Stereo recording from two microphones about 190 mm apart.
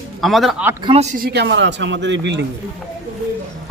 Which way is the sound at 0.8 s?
35° right (ahead or behind).